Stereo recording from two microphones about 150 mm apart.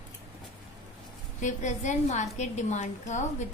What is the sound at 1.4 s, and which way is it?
A woman's voice, 55° left (ahead or behind).